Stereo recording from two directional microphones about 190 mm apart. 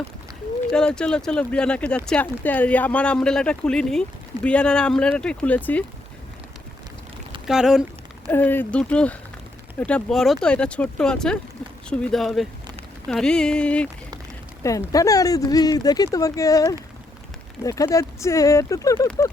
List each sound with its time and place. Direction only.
0.7 s speech: 5° left (ahead or behind)
7.4 s speech: centre (ahead or behind)
8.3 s speech: 10° left (ahead or behind)
14.6 s speech: 15° left (ahead or behind)